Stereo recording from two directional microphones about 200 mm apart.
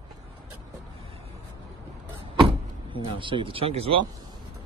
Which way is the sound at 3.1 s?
25° right (ahead or behind).